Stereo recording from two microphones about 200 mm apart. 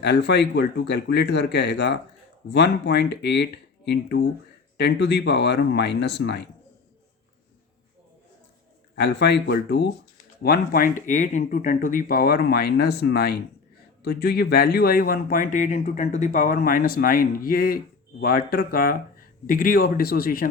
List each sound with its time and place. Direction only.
0.0 s speech: 55° left (ahead or behind)
9.0 s speech: 60° left (ahead or behind)